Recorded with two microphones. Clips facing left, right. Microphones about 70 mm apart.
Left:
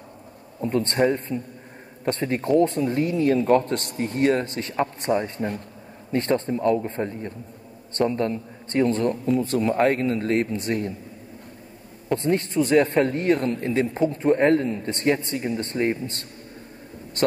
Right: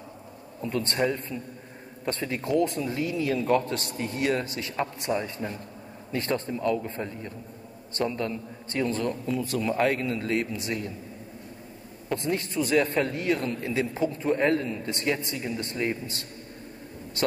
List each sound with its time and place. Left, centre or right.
0.6 s a man's voice: left
1.3 s a man's voice: left
12.2 s a man's voice: left